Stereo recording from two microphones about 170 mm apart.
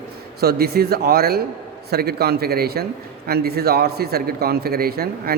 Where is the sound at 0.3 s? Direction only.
65° right (ahead or behind).